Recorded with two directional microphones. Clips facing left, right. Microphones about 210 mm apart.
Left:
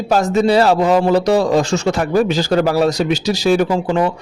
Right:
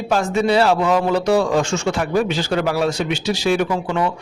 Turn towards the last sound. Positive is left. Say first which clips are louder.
# left 4 dB
turn(degrees=35)  # may be behind; listen again after turning